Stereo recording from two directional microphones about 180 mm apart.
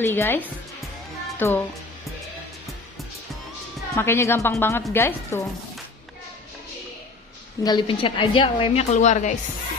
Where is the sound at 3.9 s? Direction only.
15° left (ahead or behind).